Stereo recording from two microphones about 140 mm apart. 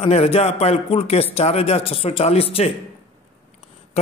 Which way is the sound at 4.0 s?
45° left (ahead or behind).